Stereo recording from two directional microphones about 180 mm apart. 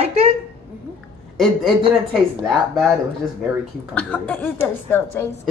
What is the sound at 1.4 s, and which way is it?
Speech, centre (ahead or behind).